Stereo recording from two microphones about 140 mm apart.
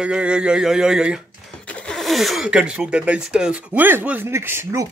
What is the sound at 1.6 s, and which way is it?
Speech, 10° left (ahead or behind).